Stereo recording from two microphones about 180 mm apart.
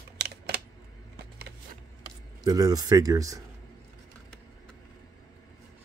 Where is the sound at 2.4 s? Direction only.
20° right (ahead or behind).